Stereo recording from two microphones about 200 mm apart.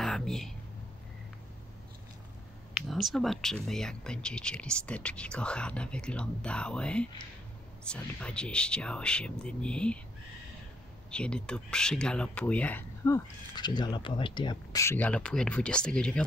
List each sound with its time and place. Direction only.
0.0 s a sound: centre (ahead or behind)
2.7 s speech: centre (ahead or behind)
11.1 s speech: 5° left (ahead or behind)